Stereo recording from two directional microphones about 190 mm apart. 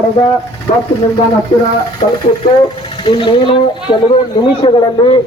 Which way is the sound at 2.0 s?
40° left (ahead or behind).